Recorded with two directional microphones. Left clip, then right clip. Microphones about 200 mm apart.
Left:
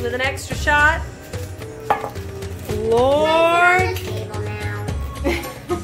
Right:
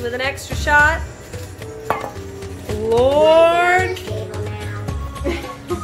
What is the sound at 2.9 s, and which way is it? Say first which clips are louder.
Music: right 3 dB; centre (ahead or behind).